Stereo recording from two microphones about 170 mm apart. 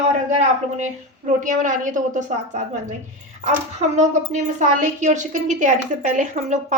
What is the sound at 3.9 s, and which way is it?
A woman's voice, 45° right (ahead or behind).